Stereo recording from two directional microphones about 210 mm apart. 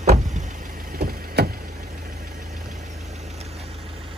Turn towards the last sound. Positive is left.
turn(degrees=-30)  # may be behind; listen again after turning